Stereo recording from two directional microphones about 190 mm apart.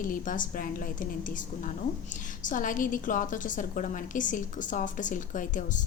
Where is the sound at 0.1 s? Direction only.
45° left (ahead or behind).